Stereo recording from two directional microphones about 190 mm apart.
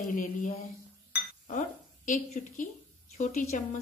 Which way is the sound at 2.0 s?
40° left (ahead or behind).